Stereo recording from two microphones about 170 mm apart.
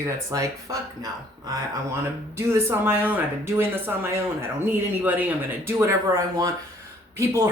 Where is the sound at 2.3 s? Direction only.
15° right (ahead or behind).